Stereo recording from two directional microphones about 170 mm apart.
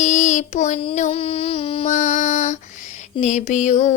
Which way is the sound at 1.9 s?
45° left (ahead or behind).